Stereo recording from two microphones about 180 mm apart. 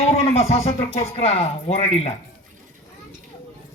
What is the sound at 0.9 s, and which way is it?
Speech, 35° left (ahead or behind).